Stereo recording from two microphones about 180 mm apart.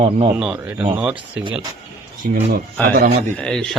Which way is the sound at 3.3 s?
5° left (ahead or behind).